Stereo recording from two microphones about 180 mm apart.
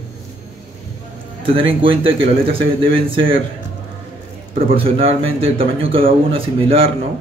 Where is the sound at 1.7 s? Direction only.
30° right (ahead or behind).